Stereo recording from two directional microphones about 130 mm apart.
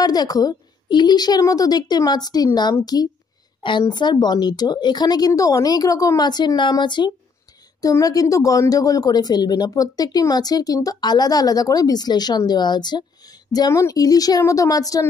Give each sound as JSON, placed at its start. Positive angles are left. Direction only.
{"t": 0.0, "sound": "a woman's voice", "side_deg": 30}